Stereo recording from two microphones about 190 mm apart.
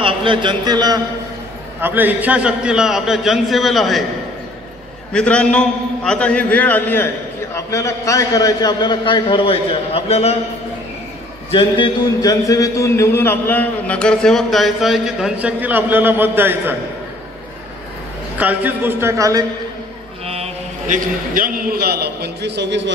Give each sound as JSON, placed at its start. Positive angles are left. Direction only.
{"t": 0.0, "sound": "a man's voice", "side_deg": -25}
{"t": 1.8, "sound": "a man's voice", "side_deg": -10}
{"t": 5.1, "sound": "a man's voice", "side_deg": 5}
{"t": 11.5, "sound": "a man's voice", "side_deg": 25}
{"t": 18.4, "sound": "a man's voice", "side_deg": -10}
{"t": 20.2, "sound": "a man's voice", "side_deg": -35}